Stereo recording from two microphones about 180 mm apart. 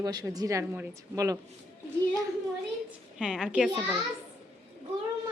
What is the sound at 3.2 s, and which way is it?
Speech, 5° right (ahead or behind).